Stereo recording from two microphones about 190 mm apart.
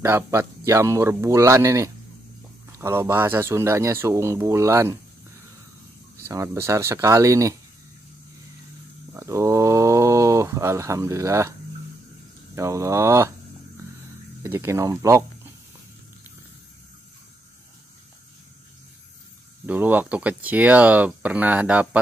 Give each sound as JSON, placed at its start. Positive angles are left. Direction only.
{"t": 0.0, "sound": "speech", "side_deg": -15}
{"t": 6.2, "sound": "speech", "side_deg": -15}
{"t": 9.1, "sound": "speech", "side_deg": -15}
{"t": 12.5, "sound": "speech", "side_deg": -15}
{"t": 14.4, "sound": "speech", "side_deg": -15}
{"t": 19.6, "sound": "speech", "side_deg": -10}